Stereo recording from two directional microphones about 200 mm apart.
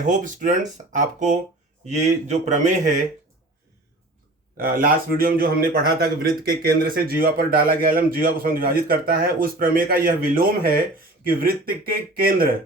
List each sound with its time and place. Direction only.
0.0 s speech: 40° right (ahead or behind)
4.5 s a man's voice: 45° right (ahead or behind)